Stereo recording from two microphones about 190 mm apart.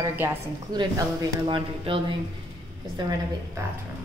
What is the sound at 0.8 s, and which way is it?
A woman's voice, 25° right (ahead or behind).